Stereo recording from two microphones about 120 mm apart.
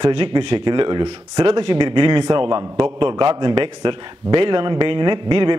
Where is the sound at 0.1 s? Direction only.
45° right (ahead or behind).